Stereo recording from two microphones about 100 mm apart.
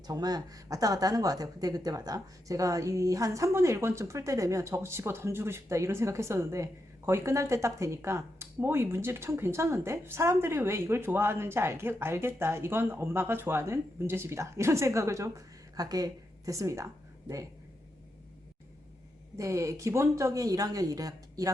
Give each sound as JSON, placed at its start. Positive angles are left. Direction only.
{"t": 0.1, "sound": "speech", "side_deg": -40}
{"t": 19.4, "sound": "speech", "side_deg": -30}